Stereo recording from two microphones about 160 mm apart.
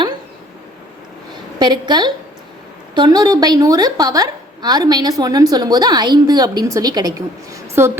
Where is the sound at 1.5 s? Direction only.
25° right (ahead or behind).